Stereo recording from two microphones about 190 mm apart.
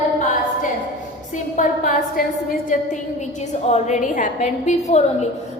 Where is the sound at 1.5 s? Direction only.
45° left (ahead or behind).